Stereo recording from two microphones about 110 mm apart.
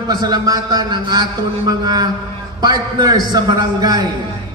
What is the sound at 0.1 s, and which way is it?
A man's voice, 35° right (ahead or behind).